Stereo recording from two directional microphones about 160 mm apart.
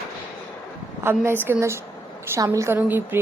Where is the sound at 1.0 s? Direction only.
15° right (ahead or behind).